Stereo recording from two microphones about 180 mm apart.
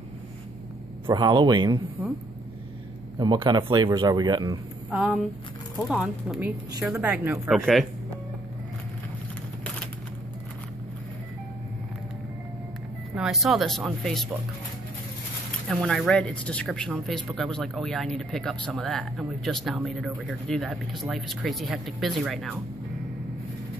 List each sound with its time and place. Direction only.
1.0 s speech: 25° right (ahead or behind)
3.2 s speech: 25° right (ahead or behind)
4.9 s speech: 5° right (ahead or behind)
13.1 s speech: centre (ahead or behind)
15.7 s speech: centre (ahead or behind)